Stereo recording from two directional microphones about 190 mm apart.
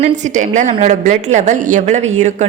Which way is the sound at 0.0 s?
40° right (ahead or behind).